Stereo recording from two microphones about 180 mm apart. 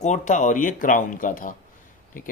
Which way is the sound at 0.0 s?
40° left (ahead or behind).